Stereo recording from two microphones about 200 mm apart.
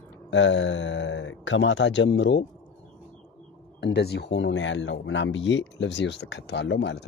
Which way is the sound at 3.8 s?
55° left (ahead or behind).